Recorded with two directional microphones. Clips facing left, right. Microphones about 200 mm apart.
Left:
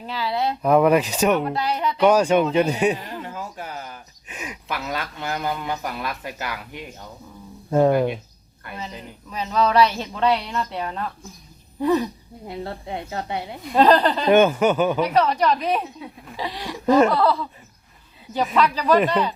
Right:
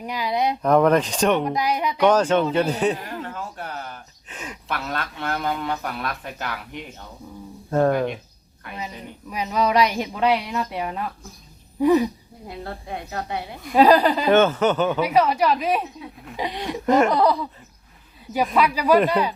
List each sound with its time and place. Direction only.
0.0 s speech: 15° right (ahead or behind)
0.6 s speech: 5° left (ahead or behind)
1.5 s speech: 10° right (ahead or behind)
2.0 s speech: 10° left (ahead or behind)
9.3 s speech: 15° right (ahead or behind)
12.5 s a woman's voice: 25° left (ahead or behind)
13.7 s speech: 10° right (ahead or behind)
14.3 s speech: 10° left (ahead or behind)
15.0 s speech: 10° right (ahead or behind)
16.4 s speech: 20° right (ahead or behind)
18.5 s speech: 10° right (ahead or behind)